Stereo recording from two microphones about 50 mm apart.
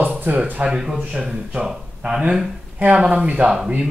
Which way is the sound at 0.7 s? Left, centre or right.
Centre.